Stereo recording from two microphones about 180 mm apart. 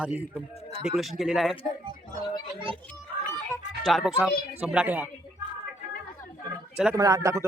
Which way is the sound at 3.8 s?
Centre (ahead or behind).